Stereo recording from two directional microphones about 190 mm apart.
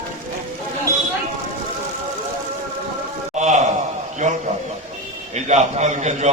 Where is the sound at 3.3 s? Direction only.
40° right (ahead or behind).